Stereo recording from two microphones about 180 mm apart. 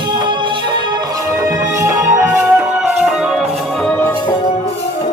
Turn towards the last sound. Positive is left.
turn(degrees=0)  # may be behind; listen again after turning